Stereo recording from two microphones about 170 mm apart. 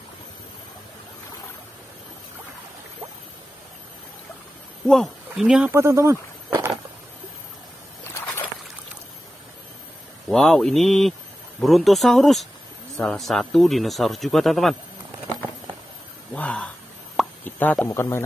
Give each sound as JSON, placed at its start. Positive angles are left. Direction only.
{"t": 4.8, "sound": "speech", "side_deg": 0}
{"t": 5.7, "sound": "speech", "side_deg": -15}
{"t": 10.2, "sound": "speech", "side_deg": 0}
{"t": 16.3, "sound": "a sound", "side_deg": 5}
{"t": 17.2, "sound": "plop", "side_deg": 0}
{"t": 17.8, "sound": "a man's voice", "side_deg": 15}